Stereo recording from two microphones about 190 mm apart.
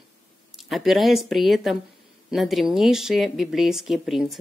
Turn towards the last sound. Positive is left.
turn(degrees=0)  # may be behind; listen again after turning